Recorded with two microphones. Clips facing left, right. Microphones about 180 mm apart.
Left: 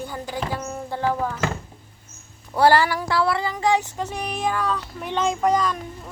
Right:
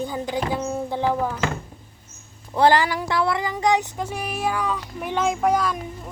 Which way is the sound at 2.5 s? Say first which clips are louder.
Even; 15° right (ahead or behind).